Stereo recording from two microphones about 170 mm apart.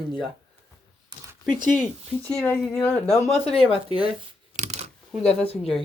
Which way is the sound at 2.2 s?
10° left (ahead or behind).